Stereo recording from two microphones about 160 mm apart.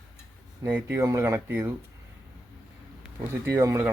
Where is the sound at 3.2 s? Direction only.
15° right (ahead or behind).